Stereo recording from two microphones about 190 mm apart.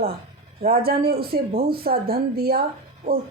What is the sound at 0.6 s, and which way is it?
A woman's voice, 55° right (ahead or behind).